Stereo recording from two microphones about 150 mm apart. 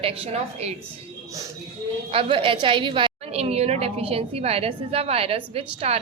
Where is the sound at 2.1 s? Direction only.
35° right (ahead or behind).